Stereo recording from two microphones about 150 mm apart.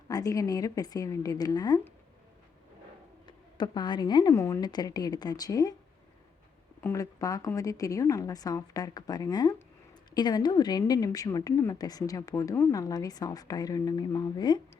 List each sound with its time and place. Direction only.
0.1 s a woman's voice: 25° left (ahead or behind)
3.2 s a woman's voice: 30° left (ahead or behind)
6.8 s a woman's voice: 20° left (ahead or behind)